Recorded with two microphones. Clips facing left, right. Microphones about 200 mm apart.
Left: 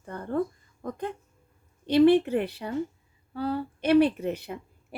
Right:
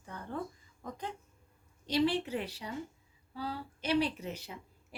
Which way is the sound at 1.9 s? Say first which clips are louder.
Left 11 dB; 55° left (ahead or behind).